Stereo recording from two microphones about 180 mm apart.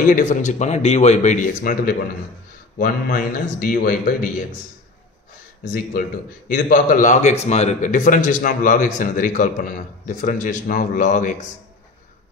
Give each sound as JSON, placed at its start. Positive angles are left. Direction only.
{"t": 0.1, "sound": "a man's voice", "side_deg": 45}
{"t": 6.5, "sound": "a man's voice", "side_deg": 50}